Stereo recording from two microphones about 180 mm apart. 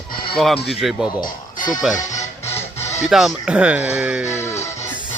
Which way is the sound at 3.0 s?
Centre (ahead or behind).